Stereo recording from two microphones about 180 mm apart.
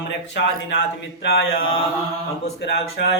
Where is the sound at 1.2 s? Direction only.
65° left (ahead or behind).